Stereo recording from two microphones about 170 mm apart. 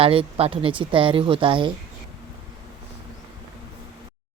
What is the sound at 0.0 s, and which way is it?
Speech, 35° right (ahead or behind).